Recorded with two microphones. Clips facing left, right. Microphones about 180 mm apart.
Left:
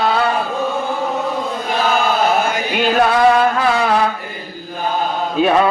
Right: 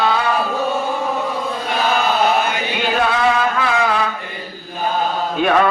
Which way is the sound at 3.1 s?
40° left (ahead or behind).